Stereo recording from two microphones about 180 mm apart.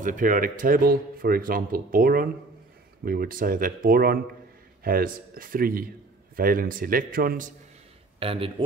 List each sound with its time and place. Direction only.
0.0 s speech: 45° right (ahead or behind)
8.2 s speech: 30° right (ahead or behind)